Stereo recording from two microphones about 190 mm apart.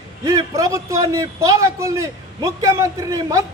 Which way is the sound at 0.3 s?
15° right (ahead or behind).